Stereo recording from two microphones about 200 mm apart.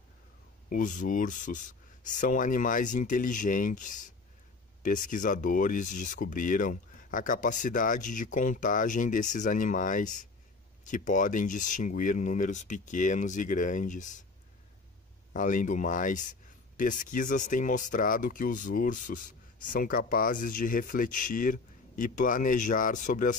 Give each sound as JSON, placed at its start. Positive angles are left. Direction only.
{"t": 0.7, "sound": "speech", "side_deg": 40}
{"t": 15.3, "sound": "speech", "side_deg": 40}